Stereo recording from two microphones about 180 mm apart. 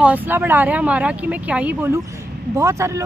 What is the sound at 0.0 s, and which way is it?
Speech, 10° right (ahead or behind).